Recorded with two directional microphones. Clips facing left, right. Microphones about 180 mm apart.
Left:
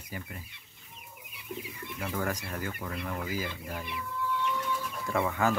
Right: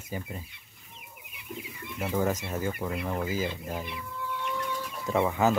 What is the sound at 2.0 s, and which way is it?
Speech, 20° right (ahead or behind).